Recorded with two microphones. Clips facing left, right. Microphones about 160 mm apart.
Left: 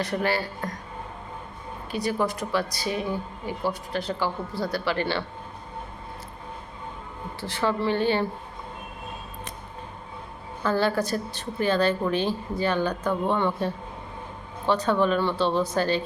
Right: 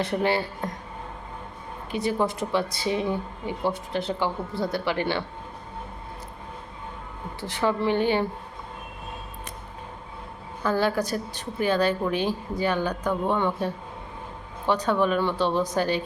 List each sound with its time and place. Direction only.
0.0 s speech: 25° right (ahead or behind)
1.9 s speech: 20° right (ahead or behind)
7.4 s speech: 15° right (ahead or behind)
10.6 s speech: 10° right (ahead or behind)